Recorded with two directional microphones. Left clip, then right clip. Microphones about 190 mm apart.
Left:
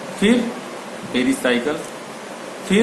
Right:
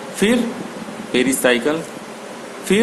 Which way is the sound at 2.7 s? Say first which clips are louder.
Right 1 dB; 55° right (ahead or behind).